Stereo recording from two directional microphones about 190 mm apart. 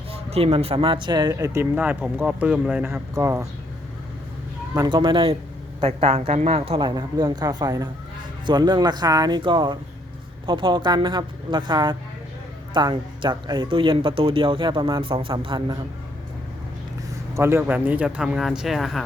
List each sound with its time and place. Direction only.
0.3 s speech: 30° right (ahead or behind); by 3.4 s 15° right (ahead or behind)
4.7 s speech: 20° right (ahead or behind)
17.3 s speech: 15° right (ahead or behind)